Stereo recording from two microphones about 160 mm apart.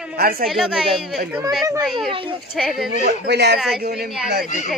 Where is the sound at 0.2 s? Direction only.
70° right (ahead or behind).